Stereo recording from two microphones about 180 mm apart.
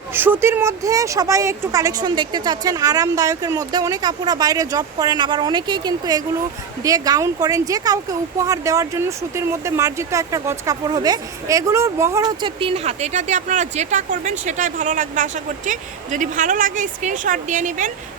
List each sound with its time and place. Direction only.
0.1 s speech: 10° right (ahead or behind); by 17.9 s 45° right (ahead or behind)